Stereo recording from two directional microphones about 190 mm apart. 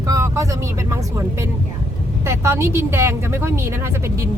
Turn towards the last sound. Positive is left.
turn(degrees=-15)  # may be behind; listen again after turning